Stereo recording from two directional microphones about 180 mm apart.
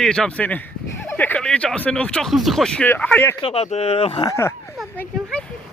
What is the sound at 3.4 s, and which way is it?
Speech, 35° left (ahead or behind).